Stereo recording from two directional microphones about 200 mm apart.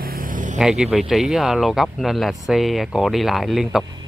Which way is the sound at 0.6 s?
Centre (ahead or behind).